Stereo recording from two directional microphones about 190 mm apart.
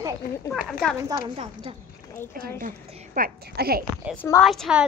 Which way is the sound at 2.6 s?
45° right (ahead or behind).